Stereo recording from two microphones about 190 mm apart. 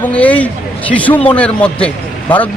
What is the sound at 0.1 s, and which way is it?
Speech, 5° left (ahead or behind).